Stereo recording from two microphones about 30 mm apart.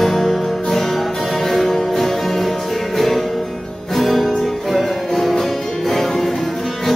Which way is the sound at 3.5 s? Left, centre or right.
Centre.